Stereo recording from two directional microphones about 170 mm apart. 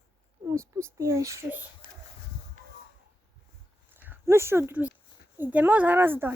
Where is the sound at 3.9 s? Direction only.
10° right (ahead or behind).